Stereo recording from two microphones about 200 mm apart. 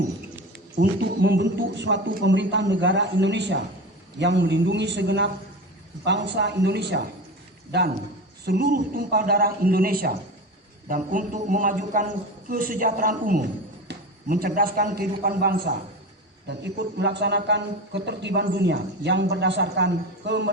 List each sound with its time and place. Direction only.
0.5 s a man's voice: 55° right (ahead or behind)